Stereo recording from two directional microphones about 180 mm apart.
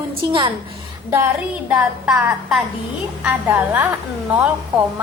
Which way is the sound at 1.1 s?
10° right (ahead or behind).